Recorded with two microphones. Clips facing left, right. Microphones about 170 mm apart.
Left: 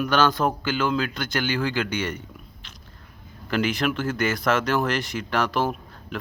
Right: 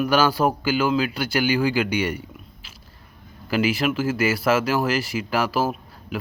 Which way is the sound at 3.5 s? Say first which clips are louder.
Right 2 dB; 5° right (ahead or behind).